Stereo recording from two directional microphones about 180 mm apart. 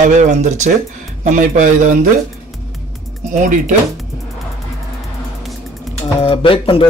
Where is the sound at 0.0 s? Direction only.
40° right (ahead or behind).